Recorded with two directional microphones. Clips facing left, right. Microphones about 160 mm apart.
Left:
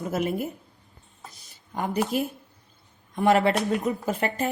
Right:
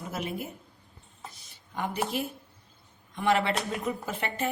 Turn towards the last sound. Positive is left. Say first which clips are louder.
# left 6 dB
turn(degrees=40)  # may be behind; listen again after turning